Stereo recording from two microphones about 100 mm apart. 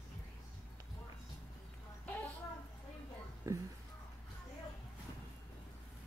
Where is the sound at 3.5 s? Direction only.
30° right (ahead or behind).